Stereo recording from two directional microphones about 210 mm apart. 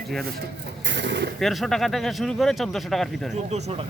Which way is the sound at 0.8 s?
60° right (ahead or behind).